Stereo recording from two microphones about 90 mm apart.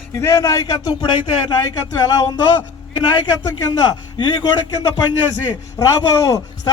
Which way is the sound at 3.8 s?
65° left (ahead or behind).